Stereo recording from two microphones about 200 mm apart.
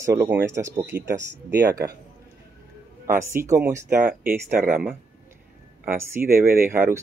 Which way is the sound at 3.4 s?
15° right (ahead or behind).